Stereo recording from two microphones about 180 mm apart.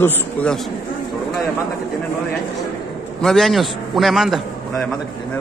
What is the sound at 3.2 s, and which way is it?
A man's voice, centre (ahead or behind).